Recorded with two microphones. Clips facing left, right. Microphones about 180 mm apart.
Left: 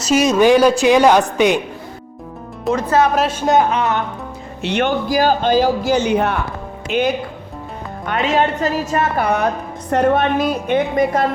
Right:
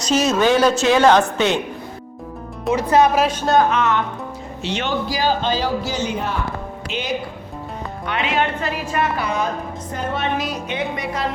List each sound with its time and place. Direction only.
0.0 s a woman's voice: 10° left (ahead or behind)
2.6 s a woman's voice: 10° right (ahead or behind)
3.1 s speech: centre (ahead or behind)
3.4 s speech: 20° left (ahead or behind)
3.7 s speech: 35° left (ahead or behind)
4.6 s a man's voice: 55° left (ahead or behind)
6.9 s a man's voice: 55° left (ahead or behind)